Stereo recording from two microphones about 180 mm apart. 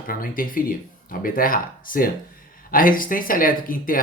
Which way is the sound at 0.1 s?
50° left (ahead or behind).